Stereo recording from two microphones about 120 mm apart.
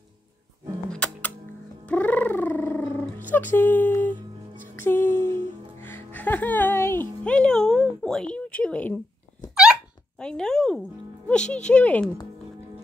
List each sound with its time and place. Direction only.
0.8 s music: 10° left (ahead or behind)
1.9 s gargling: 15° left (ahead or behind)
3.3 s speech: 15° left (ahead or behind)
4.7 s music: 20° left (ahead or behind)
7.2 s a sound: 5° left (ahead or behind)
10.1 s a sound: 5° left (ahead or behind)
11.2 s speech: 10° left (ahead or behind)